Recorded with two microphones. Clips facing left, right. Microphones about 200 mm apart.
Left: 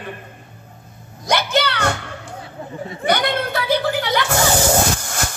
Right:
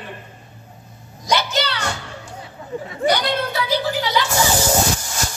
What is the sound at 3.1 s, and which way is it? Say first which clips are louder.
Speech: even; 55° left (ahead or behind).